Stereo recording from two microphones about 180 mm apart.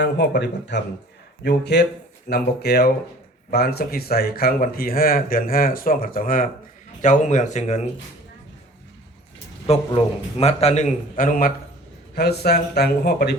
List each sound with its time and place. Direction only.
0.0 s speech: 75° left (ahead or behind); by 7.8 s 40° left (ahead or behind)
9.6 s a man's voice: 35° left (ahead or behind); by 11.5 s 50° left (ahead or behind)
12.1 s speech: 60° left (ahead or behind)